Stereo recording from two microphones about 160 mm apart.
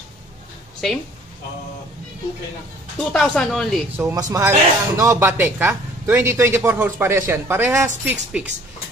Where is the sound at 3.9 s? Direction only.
20° right (ahead or behind).